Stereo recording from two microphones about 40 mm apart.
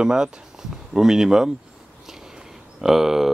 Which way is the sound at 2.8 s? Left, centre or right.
Centre.